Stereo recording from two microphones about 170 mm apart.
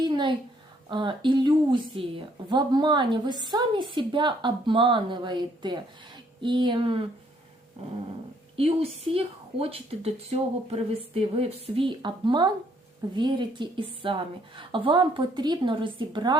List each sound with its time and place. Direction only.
0.0 s a sound: 25° right (ahead or behind)
0.9 s a woman's voice: 30° right (ahead or behind)
8.5 s a woman's voice: 35° right (ahead or behind)